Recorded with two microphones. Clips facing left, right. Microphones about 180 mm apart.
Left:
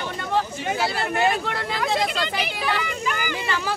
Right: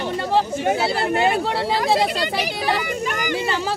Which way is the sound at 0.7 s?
30° right (ahead or behind).